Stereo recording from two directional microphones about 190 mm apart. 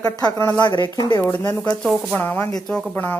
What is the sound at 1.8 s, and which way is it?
Speech, centre (ahead or behind).